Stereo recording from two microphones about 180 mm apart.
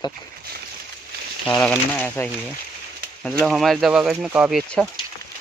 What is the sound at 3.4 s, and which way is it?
Speech, centre (ahead or behind).